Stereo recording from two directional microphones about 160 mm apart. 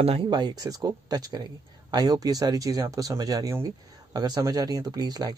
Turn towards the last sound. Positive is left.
turn(degrees=-25)  # may be behind; listen again after turning